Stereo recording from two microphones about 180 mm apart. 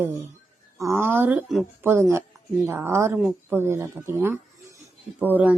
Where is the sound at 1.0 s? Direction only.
10° right (ahead or behind).